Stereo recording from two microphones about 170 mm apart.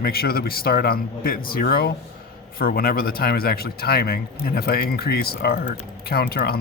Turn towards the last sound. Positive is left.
turn(degrees=65)  # may be behind; listen again after turning